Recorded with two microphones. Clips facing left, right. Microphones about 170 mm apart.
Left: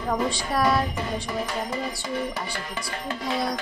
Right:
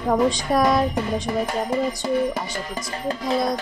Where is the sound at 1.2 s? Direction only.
50° right (ahead or behind).